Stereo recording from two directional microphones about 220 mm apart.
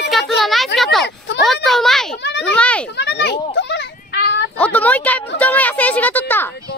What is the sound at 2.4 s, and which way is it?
Speech, 5° left (ahead or behind).